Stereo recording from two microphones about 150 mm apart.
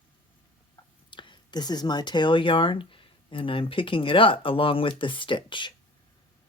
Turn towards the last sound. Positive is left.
turn(degrees=30)  # may be behind; listen again after turning